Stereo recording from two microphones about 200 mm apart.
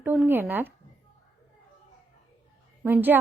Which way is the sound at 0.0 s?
10° right (ahead or behind).